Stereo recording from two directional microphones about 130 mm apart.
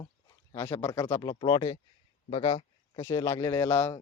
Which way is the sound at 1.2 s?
35° left (ahead or behind).